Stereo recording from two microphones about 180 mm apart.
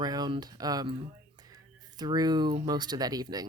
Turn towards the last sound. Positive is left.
turn(degrees=-20)  # may be behind; listen again after turning